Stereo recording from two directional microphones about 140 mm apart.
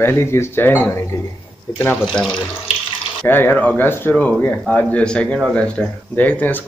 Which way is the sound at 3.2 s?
15° left (ahead or behind).